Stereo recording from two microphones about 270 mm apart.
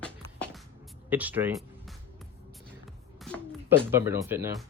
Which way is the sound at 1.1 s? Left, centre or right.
Centre.